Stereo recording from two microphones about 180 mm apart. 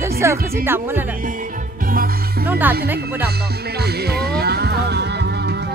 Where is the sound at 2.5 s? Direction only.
10° right (ahead or behind).